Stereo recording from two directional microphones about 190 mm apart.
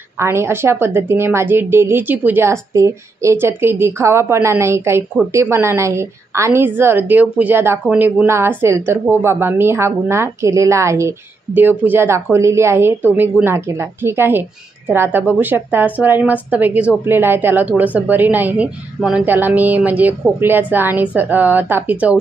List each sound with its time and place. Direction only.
0.2 s a woman's voice: 15° right (ahead or behind)